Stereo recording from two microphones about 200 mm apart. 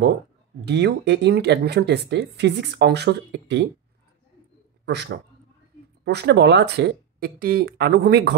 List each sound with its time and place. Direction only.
0.7 s speech: 55° right (ahead or behind)
4.8 s a man's voice: 60° right (ahead or behind)